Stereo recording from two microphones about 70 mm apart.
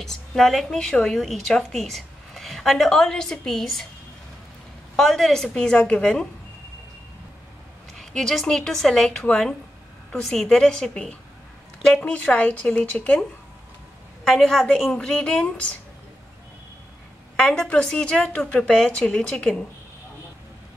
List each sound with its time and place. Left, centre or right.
0.0 s a woman's voice: centre
4.9 s a woman's voice: centre
8.0 s a woman's voice: centre
14.2 s a woman's voice: centre
17.4 s a woman's voice: centre